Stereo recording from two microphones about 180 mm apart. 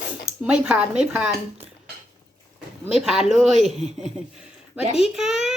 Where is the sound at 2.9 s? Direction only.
5° right (ahead or behind).